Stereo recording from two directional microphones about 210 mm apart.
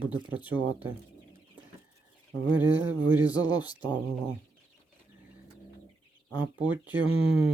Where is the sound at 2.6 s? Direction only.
10° right (ahead or behind).